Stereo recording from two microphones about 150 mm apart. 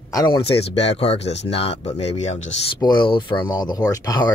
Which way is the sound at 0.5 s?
45° left (ahead or behind).